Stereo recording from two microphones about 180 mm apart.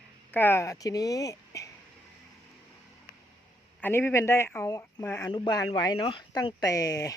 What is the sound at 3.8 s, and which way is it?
Speech, 10° left (ahead or behind).